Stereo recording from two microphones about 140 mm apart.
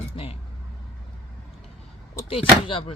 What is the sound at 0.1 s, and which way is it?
Vehicle, 40° left (ahead or behind).